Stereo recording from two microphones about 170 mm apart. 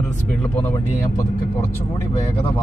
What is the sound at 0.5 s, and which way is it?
Speech, 15° left (ahead or behind).